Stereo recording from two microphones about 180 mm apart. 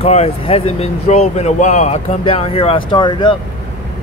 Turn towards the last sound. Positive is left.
turn(degrees=25)  # may be behind; listen again after turning